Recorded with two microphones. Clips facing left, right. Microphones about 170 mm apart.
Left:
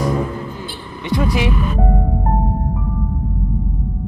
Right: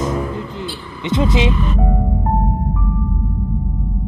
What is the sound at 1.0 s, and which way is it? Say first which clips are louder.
Speech: right 2 dB; 20° right (ahead or behind).